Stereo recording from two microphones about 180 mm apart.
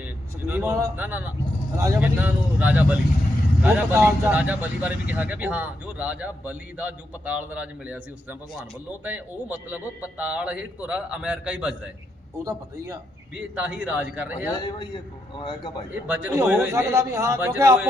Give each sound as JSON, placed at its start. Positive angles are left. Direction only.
{"t": 0.0, "sound": "a man's voice", "side_deg": -10}
{"t": 13.6, "sound": "a man's voice", "side_deg": -5}
{"t": 14.6, "sound": "a man's voice", "side_deg": 25}
{"t": 16.0, "sound": "a man's voice", "side_deg": -10}